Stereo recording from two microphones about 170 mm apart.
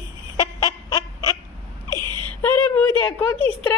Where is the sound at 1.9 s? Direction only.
25° right (ahead or behind).